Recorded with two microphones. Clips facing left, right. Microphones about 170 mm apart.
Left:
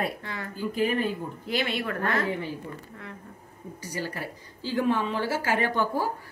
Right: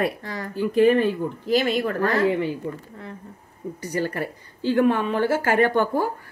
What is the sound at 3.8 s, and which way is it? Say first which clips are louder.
Speech: right 8 dB; 60° right (ahead or behind).